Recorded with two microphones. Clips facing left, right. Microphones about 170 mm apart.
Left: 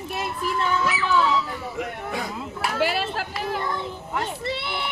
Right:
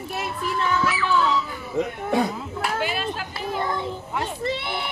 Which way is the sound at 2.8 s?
85° left.